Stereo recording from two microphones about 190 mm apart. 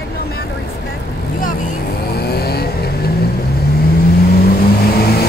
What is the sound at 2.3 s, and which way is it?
Vehicle, 55° left (ahead or behind).